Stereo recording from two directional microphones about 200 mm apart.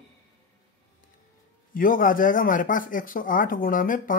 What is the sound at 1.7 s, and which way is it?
Speech, 45° left (ahead or behind).